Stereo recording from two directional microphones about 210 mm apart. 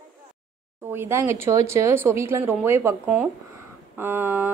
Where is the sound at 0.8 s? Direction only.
10° right (ahead or behind).